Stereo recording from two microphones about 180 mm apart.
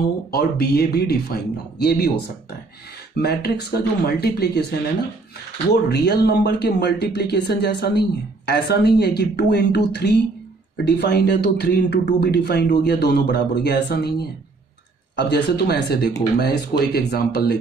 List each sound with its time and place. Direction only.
0.3 s speech: 60° left (ahead or behind)
5.9 s speech: 65° left (ahead or behind)